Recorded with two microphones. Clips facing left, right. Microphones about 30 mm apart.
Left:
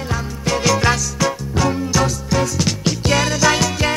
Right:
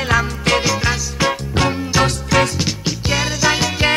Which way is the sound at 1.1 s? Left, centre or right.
Right.